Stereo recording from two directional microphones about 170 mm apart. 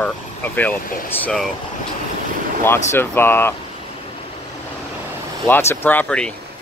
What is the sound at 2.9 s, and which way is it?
Speech, 15° left (ahead or behind).